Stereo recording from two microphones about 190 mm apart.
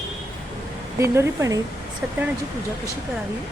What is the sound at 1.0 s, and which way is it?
Speech, 15° right (ahead or behind).